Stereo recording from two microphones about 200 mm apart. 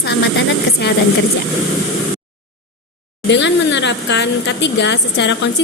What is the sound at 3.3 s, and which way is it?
A woman's voice, 65° left (ahead or behind).